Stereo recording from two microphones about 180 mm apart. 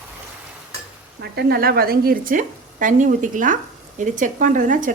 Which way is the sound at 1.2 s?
60° right (ahead or behind).